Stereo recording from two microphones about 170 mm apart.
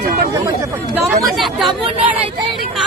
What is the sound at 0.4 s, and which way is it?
Chatter, 20° right (ahead or behind).